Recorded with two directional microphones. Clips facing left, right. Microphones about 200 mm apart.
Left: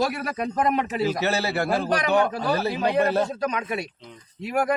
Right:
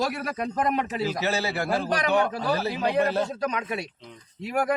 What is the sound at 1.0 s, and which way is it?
Speech, 65° left (ahead or behind).